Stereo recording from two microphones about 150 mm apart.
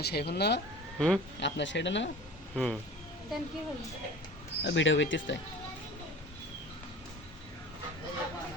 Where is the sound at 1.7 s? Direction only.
90° left.